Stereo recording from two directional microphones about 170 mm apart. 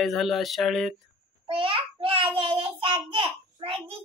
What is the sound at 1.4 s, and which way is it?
Child singing, 30° right (ahead or behind).